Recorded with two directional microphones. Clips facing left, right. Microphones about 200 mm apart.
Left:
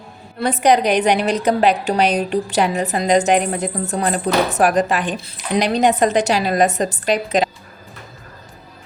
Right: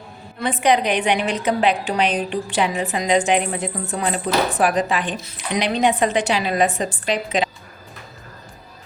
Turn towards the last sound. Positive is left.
turn(degrees=40)  # may be behind; listen again after turning